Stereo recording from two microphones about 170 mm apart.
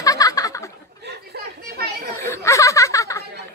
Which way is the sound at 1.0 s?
65° right (ahead or behind).